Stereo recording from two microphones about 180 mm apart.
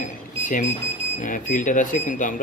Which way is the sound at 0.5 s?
45° left (ahead or behind).